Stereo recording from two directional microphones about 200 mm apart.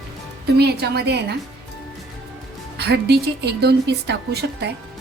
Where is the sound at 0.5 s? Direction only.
55° right (ahead or behind).